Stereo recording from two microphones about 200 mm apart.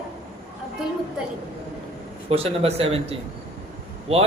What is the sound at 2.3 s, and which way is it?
A man's voice, 30° right (ahead or behind).